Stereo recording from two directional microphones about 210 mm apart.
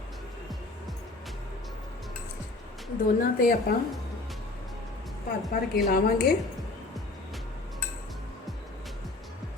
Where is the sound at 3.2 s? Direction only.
40° left (ahead or behind).